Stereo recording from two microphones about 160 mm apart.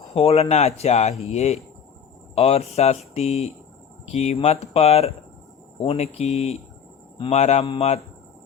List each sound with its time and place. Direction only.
0.1 s speech: 40° left (ahead or behind)